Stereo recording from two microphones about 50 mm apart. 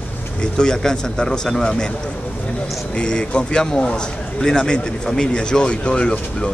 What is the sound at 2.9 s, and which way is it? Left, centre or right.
A man's voice, centre.